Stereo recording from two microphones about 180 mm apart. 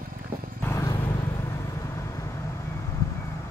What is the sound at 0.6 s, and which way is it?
Vehicle, 15° left (ahead or behind).